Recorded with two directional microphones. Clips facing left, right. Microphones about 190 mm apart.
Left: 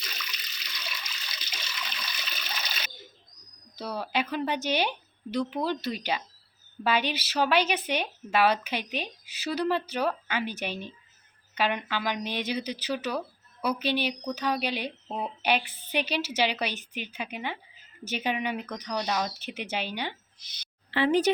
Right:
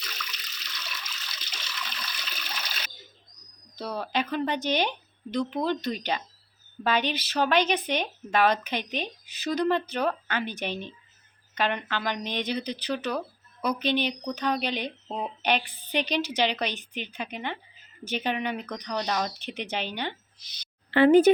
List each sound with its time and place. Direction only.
0.0 s water: 5° left (ahead or behind)
0.8 s toilet flush: 10° left (ahead or behind)
3.8 s speech: 10° left (ahead or behind)
20.9 s speech: 55° right (ahead or behind)